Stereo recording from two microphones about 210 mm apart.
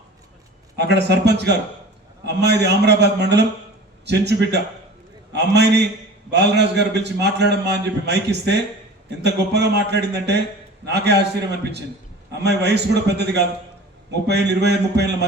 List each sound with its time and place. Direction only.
0.8 s a man's voice: 55° right (ahead or behind)